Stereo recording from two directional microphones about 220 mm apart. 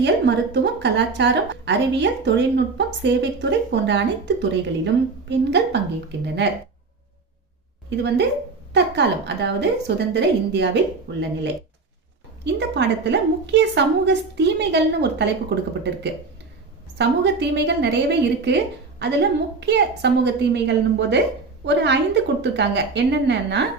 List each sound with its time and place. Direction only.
0.0 s a woman's voice: 50° right (ahead or behind)
8.7 s a woman's voice: 50° right (ahead or behind)
17.0 s a woman's voice: 50° right (ahead or behind)